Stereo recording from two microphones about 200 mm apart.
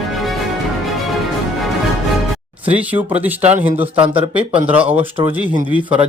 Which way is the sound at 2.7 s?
5° right (ahead or behind).